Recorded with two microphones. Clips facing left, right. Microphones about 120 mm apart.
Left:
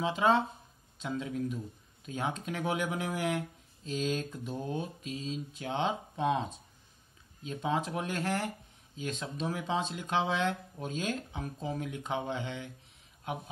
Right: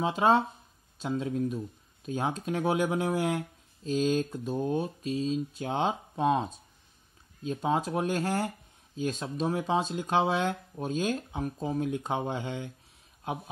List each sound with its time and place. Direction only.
0.0 s speech: 35° right (ahead or behind)